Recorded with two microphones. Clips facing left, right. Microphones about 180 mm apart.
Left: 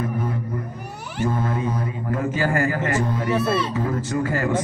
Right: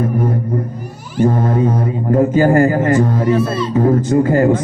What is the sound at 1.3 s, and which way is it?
A man's voice, 40° right (ahead or behind).